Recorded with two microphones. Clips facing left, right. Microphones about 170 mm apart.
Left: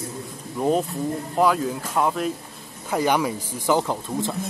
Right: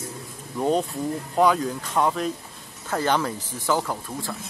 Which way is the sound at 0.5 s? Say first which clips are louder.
Left 1 dB; 5° left (ahead or behind).